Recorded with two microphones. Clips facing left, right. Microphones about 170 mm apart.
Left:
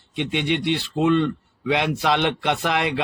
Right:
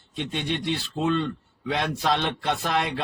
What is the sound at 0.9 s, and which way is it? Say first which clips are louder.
A man's voice: left 6 dB; 70° left (ahead or behind).